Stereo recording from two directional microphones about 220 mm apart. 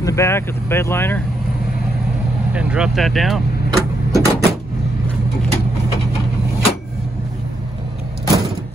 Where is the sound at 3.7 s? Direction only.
15° right (ahead or behind).